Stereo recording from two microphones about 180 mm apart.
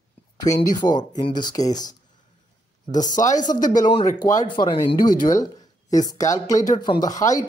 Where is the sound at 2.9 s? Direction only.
45° left (ahead or behind).